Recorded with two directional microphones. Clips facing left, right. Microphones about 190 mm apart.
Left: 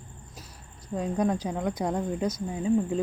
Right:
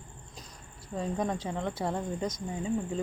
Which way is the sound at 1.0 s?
10° left (ahead or behind).